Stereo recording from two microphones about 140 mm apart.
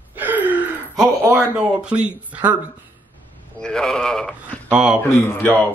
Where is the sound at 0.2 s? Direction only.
10° right (ahead or behind).